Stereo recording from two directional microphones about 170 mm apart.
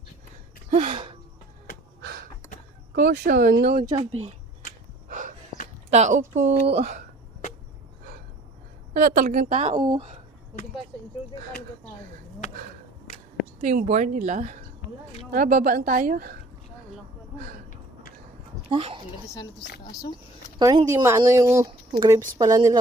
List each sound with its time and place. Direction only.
2.0 s a sound: 75° right (ahead or behind)
2.9 s speech: 50° right (ahead or behind); by 3.8 s 75° right (ahead or behind)
5.0 s snort: 45° right (ahead or behind)
5.9 s a woman's voice: 45° right (ahead or behind)
8.9 s a woman's voice: 50° right (ahead or behind)
13.6 s a woman's voice: 40° right (ahead or behind); by 16.4 s 60° right (ahead or behind)
18.7 s speech: 35° right (ahead or behind)
19.3 s speech: 25° left (ahead or behind)
20.6 s speech: 20° right (ahead or behind)